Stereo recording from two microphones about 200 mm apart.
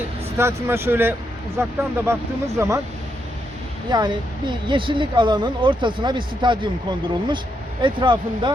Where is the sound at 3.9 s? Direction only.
20° right (ahead or behind).